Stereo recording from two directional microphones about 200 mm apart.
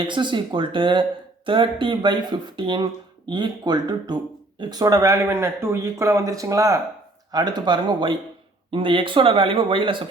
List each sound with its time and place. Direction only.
0.1 s speech: 25° right (ahead or behind)